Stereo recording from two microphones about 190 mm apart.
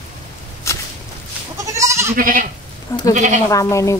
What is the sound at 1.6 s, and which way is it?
Goat, 15° right (ahead or behind).